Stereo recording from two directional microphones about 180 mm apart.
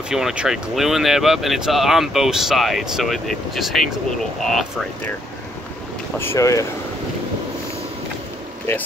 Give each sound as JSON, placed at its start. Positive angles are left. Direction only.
{"t": 0.1, "sound": "speech", "side_deg": -5}
{"t": 6.1, "sound": "speech", "side_deg": 15}